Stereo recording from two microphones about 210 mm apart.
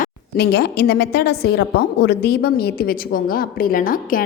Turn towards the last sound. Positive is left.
turn(degrees=40)  # may be behind; listen again after turning